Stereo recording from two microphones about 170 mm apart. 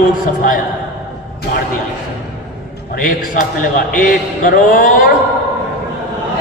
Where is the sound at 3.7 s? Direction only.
55° left (ahead or behind).